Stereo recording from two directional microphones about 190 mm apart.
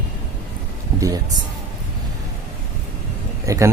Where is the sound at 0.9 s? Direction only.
20° right (ahead or behind).